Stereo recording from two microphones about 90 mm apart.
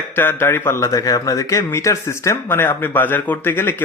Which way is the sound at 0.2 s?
25° left (ahead or behind).